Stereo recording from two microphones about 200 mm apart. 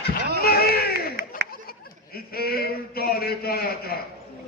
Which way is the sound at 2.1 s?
50° left (ahead or behind).